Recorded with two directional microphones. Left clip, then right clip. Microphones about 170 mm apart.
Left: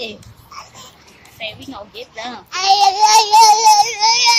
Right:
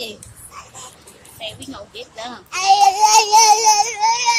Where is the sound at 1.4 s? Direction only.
10° left (ahead or behind).